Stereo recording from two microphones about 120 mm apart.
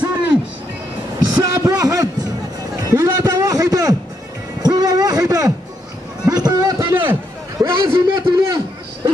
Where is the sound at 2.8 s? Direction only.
30° right (ahead or behind).